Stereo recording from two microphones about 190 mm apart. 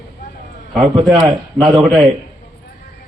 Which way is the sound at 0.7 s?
Centre (ahead or behind).